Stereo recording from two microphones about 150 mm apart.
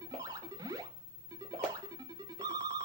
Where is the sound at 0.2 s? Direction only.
25° right (ahead or behind).